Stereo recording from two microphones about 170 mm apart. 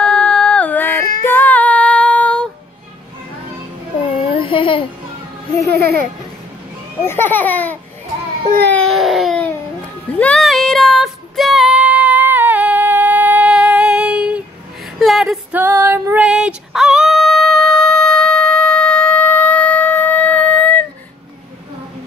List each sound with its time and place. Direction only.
0.0 s a sound: 5° left (ahead or behind)
4.3 s a sound: 30° left (ahead or behind)
5.8 s speech: 65° right (ahead or behind)
7.1 s speech: 10° left (ahead or behind)
8.6 s baby cry: 5° left (ahead or behind)
10.1 s music: 5° left (ahead or behind)
15.0 s female singing: centre (ahead or behind)